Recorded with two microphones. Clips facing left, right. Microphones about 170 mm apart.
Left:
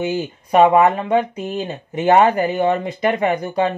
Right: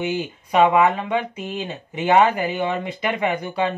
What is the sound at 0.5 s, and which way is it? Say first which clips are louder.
Speech: left 4 dB; 45° left (ahead or behind).